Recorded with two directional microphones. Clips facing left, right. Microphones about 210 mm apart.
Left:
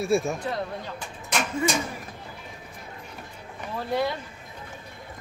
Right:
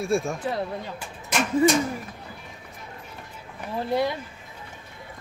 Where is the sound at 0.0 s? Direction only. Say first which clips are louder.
Left 1 dB; centre (ahead or behind).